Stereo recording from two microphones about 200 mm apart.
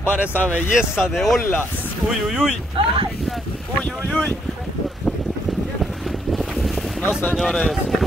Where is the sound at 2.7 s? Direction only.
25° right (ahead or behind).